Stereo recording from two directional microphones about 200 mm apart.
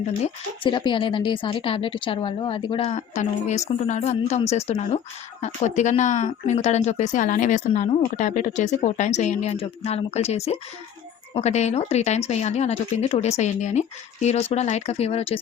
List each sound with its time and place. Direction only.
0.6 s a woman's voice: 25° left (ahead or behind)